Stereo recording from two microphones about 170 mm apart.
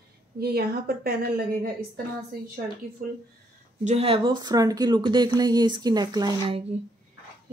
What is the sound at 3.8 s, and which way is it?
Speech, 35° right (ahead or behind).